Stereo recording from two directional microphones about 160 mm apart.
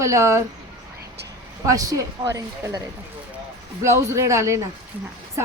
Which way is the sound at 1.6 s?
20° right (ahead or behind).